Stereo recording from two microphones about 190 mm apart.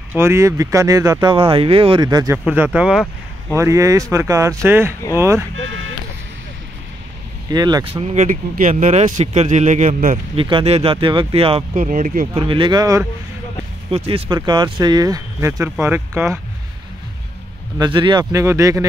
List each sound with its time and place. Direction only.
0.1 s speech: 15° right (ahead or behind)
2.3 s speech: 10° right (ahead or behind)
3.5 s speech: 15° right (ahead or behind)
7.5 s speech: 20° right (ahead or behind); by 10.1 s 40° right (ahead or behind)
10.3 s speech: 30° right (ahead or behind)
11.7 s speech: 45° right (ahead or behind)
12.4 s speech: 25° right (ahead or behind)
13.8 s speech: 30° right (ahead or behind); by 16.3 s 15° right (ahead or behind)
17.7 s speech: 25° right (ahead or behind)